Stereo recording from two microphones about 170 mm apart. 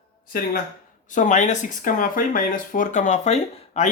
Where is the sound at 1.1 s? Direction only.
50° left (ahead or behind).